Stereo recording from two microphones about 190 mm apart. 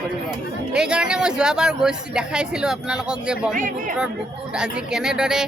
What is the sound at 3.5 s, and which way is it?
Speech, 45° right (ahead or behind).